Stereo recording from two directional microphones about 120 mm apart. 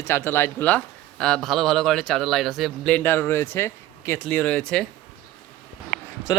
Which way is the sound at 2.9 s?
15° left (ahead or behind).